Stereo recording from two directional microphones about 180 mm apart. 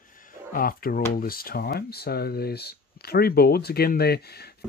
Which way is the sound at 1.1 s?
55° left (ahead or behind).